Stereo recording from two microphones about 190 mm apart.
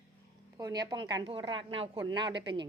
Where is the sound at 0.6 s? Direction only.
20° right (ahead or behind).